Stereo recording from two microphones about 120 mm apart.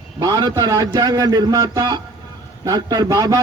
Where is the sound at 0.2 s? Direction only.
35° right (ahead or behind).